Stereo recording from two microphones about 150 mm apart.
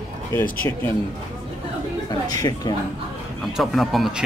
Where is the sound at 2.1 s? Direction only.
25° left (ahead or behind).